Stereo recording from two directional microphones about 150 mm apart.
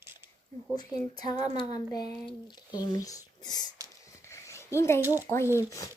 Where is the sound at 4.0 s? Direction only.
20° left (ahead or behind).